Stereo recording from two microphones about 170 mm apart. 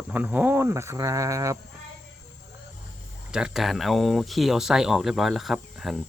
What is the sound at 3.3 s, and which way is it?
Speech, 5° right (ahead or behind).